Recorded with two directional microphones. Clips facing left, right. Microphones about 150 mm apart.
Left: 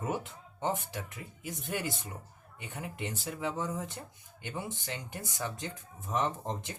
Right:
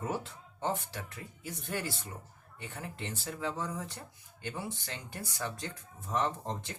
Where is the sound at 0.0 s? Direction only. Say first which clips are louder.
Left 1 dB; 15° left (ahead or behind).